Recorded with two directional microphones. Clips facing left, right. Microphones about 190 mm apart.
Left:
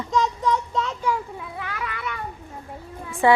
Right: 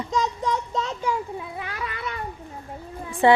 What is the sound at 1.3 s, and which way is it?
Cat, 25° right (ahead or behind).